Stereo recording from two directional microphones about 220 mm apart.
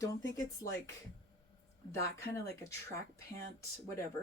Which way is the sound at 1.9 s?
15° left (ahead or behind).